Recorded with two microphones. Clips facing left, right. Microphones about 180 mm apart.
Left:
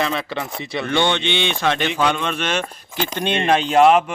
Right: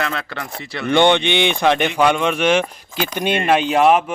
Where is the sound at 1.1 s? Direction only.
15° right (ahead or behind).